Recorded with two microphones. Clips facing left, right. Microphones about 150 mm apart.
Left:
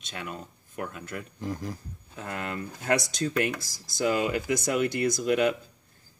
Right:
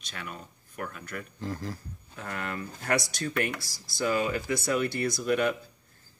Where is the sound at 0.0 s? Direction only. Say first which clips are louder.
Left 3 dB; 25° left (ahead or behind).